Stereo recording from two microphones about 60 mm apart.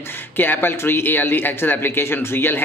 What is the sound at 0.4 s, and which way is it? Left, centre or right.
Speech, left.